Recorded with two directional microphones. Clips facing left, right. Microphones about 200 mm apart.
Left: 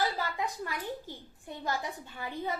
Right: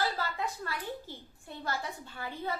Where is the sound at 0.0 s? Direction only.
15° left (ahead or behind).